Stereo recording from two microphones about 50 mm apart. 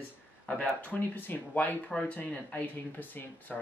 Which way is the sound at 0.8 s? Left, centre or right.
Left.